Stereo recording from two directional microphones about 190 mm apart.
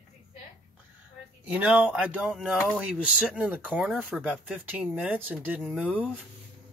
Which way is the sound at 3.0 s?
5° right (ahead or behind).